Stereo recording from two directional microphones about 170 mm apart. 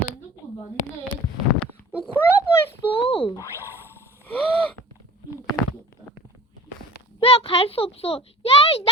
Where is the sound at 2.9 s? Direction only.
35° left (ahead or behind).